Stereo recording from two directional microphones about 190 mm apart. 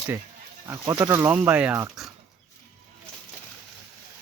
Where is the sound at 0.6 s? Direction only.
20° right (ahead or behind).